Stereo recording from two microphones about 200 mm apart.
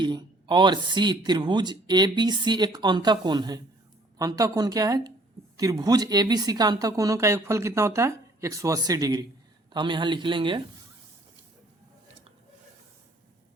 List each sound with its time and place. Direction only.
0.0 s speech: 20° right (ahead or behind)